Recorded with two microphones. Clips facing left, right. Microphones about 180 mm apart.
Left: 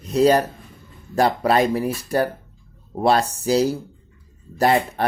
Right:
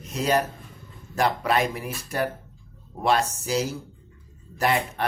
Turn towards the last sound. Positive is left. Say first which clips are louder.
# left 6 dB
turn(degrees=35)  # may be behind; listen again after turning